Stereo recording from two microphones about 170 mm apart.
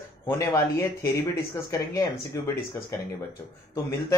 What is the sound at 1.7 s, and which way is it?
Speech, 20° left (ahead or behind).